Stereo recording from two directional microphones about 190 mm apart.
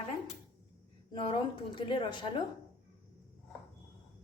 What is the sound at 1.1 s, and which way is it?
A woman's voice, 25° left (ahead or behind).